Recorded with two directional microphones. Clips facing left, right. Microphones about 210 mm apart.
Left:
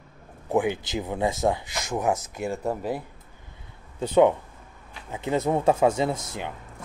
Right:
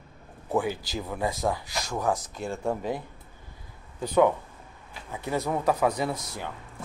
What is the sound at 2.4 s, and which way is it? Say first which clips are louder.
Speech: left 1 dB; 5° left (ahead or behind).